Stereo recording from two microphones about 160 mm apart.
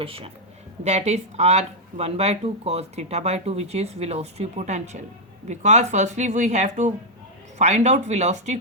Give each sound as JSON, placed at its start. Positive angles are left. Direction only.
{"t": 0.0, "sound": "speech", "side_deg": -35}